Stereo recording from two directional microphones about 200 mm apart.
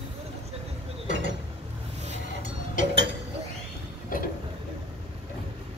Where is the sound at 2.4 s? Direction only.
65° right (ahead or behind).